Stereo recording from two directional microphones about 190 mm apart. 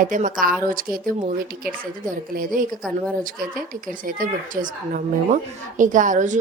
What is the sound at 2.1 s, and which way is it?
Speech, 45° right (ahead or behind).